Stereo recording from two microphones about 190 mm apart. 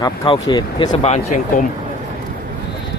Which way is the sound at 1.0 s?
40° left (ahead or behind).